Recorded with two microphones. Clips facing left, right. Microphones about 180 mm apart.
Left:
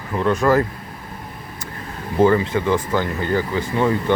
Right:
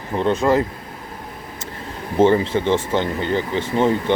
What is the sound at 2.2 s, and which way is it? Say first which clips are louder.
Speech: right 1 dB; 30° right (ahead or behind).